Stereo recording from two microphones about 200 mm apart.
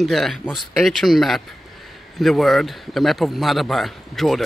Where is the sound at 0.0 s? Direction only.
Centre (ahead or behind).